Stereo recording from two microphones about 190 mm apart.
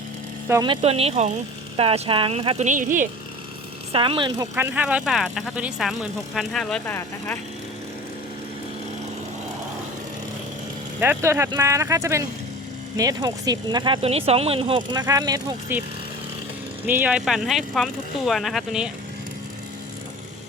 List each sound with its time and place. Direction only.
0.6 s a woman's voice: 30° right (ahead or behind)
3.9 s speech: 25° right (ahead or behind)
4.5 s speech: 10° right (ahead or behind); by 7.3 s 10° left (ahead or behind)
11.0 s speech: 10° right (ahead or behind)
16.8 s speech: 10° right (ahead or behind)